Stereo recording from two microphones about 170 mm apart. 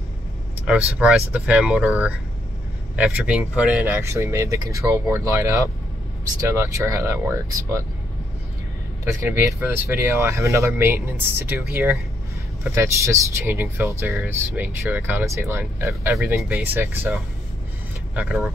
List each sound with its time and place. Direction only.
0.7 s speech: 5° right (ahead or behind)
9.0 s speech: 15° right (ahead or behind)